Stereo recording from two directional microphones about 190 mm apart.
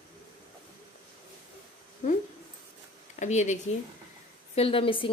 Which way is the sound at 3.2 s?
40° left (ahead or behind).